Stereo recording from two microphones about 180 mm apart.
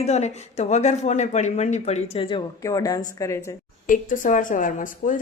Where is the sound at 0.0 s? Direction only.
40° left (ahead or behind).